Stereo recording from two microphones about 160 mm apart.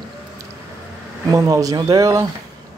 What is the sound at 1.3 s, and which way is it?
Speech, 20° right (ahead or behind).